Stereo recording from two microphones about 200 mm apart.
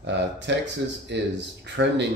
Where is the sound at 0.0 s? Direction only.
60° right (ahead or behind).